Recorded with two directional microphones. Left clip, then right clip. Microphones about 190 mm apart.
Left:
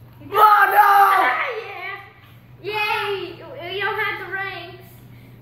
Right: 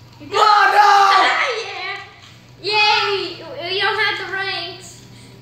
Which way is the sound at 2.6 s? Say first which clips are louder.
Right 7 dB; 40° right (ahead or behind).